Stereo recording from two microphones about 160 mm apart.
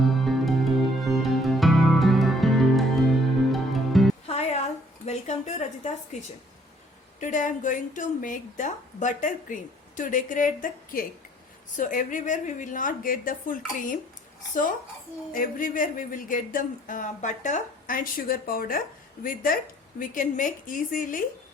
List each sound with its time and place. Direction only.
0.1 s music: centre (ahead or behind)
4.3 s a sound: 40° left (ahead or behind)
6.1 s a woman's voice: 45° left (ahead or behind)
15.3 s a woman's voice: 60° left (ahead or behind)